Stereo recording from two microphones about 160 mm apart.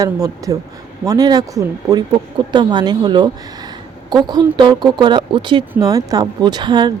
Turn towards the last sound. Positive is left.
turn(degrees=-25)  # may be behind; listen again after turning